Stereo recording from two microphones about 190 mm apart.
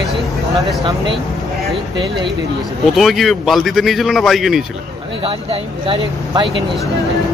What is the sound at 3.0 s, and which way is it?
A man's voice, centre (ahead or behind).